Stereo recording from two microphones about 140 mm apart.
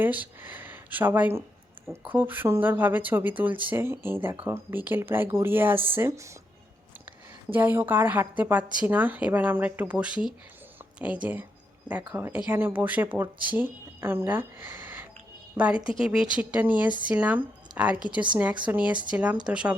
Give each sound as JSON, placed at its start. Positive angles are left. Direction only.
{"t": 0.0, "sound": "speech", "side_deg": -10}
{"t": 7.5, "sound": "speech", "side_deg": -15}